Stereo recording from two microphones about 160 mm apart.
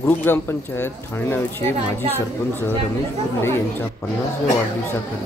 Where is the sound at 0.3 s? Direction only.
15° left (ahead or behind).